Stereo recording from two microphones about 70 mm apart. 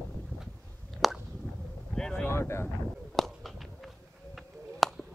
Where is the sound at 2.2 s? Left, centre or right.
Left.